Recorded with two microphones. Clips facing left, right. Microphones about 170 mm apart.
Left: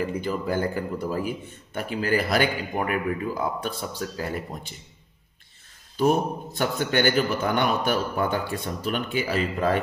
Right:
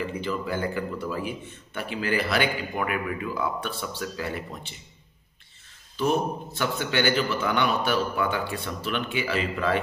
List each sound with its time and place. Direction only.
0.0 s a man's voice: 45° left (ahead or behind)
5.9 s a man's voice: 45° left (ahead or behind)